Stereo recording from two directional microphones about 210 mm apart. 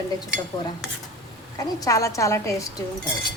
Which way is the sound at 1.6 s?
15° left (ahead or behind).